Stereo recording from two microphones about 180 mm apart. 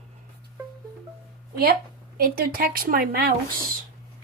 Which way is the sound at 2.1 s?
55° right (ahead or behind).